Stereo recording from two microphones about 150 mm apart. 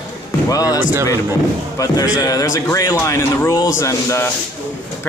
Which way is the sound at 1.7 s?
25° left (ahead or behind).